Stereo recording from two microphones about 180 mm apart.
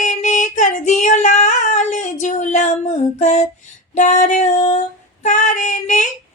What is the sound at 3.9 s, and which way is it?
Female singing, 45° left (ahead or behind).